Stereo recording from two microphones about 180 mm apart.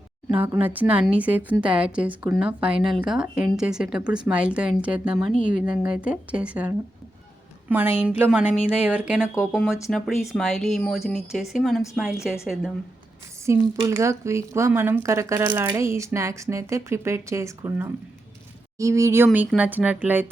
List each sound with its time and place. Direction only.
0.3 s a woman's voice: 10° right (ahead or behind)
13.4 s speech: 15° right (ahead or behind)